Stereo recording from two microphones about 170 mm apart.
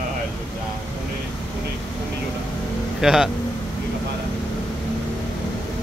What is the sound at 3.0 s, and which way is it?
Speech, 5° right (ahead or behind).